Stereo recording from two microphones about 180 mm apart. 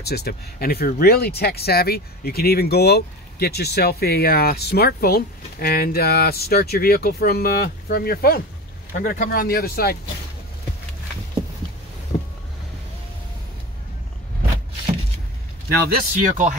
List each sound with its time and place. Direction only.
0.0 s speech: 60° left (ahead or behind)
15.8 s speech: 50° right (ahead or behind)